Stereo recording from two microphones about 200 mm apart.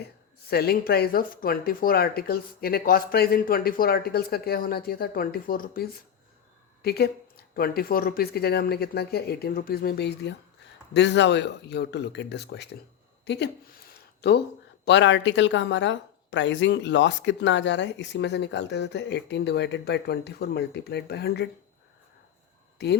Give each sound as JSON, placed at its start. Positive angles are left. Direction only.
{"t": 0.5, "sound": "speech", "side_deg": 50}
{"t": 22.8, "sound": "speech", "side_deg": 55}